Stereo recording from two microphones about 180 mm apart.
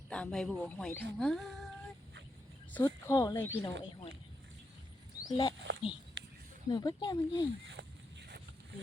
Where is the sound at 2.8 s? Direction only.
25° left (ahead or behind).